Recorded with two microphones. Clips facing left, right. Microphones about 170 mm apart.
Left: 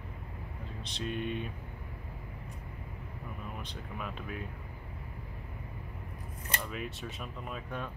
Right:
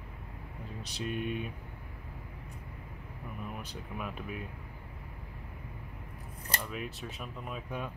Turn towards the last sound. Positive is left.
turn(degrees=-5)  # may be behind; listen again after turning